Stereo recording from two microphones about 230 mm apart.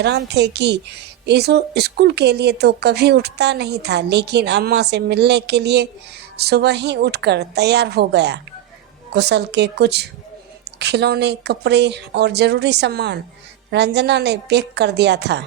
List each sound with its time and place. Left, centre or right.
0.0 s a woman's voice: right